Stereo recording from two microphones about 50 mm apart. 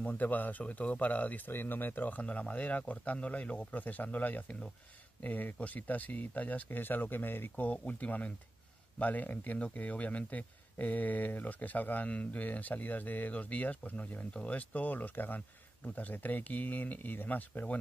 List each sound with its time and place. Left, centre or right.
0.0 s speech: left
1.5 s speech: left